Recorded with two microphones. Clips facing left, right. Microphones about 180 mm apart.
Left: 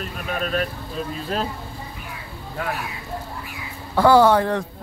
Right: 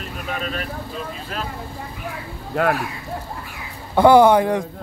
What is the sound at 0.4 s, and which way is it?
Speech, 45° left (ahead or behind).